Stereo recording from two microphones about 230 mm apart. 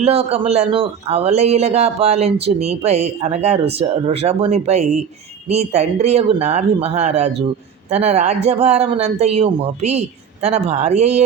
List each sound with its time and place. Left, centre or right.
0.0 s speech: right